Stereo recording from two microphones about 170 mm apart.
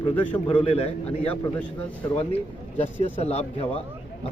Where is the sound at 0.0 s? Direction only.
35° left (ahead or behind).